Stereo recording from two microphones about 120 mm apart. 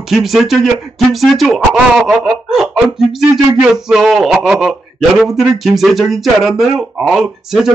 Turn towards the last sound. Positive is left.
turn(degrees=0)  # may be behind; listen again after turning